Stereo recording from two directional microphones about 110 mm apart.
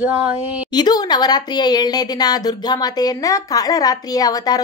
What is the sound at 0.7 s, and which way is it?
A woman's voice, 40° left (ahead or behind).